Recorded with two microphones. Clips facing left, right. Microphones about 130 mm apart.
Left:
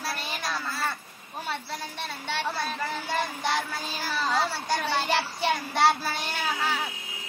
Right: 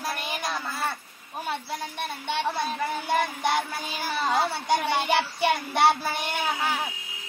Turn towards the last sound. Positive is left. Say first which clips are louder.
# right 2 dB
turn(degrees=-20)  # may be behind; listen again after turning